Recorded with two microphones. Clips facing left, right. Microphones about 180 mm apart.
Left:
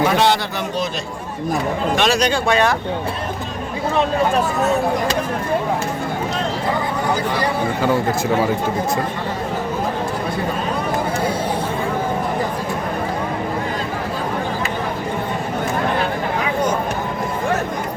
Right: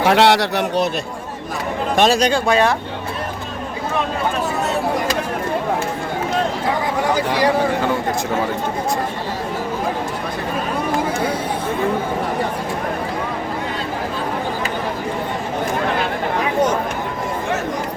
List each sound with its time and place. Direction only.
0.0 s a man's voice: 70° right (ahead or behind)
2.0 s speech: 40° right (ahead or behind)